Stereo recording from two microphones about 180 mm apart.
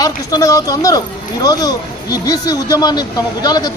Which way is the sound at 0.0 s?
20° left (ahead or behind).